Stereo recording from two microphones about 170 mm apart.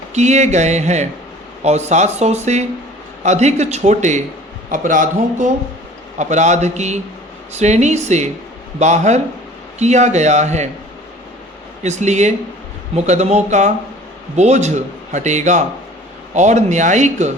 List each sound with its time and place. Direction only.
0.1 s a man's voice: 40° right (ahead or behind)
11.8 s a man's voice: 40° right (ahead or behind)